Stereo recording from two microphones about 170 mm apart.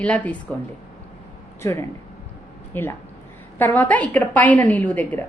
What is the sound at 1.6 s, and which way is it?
A woman's voice, 20° left (ahead or behind).